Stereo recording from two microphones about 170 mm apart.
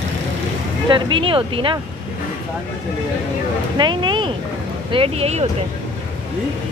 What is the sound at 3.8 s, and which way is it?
Speech, 25° right (ahead or behind).